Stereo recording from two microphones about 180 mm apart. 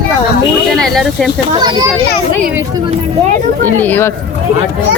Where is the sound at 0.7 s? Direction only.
Centre (ahead or behind).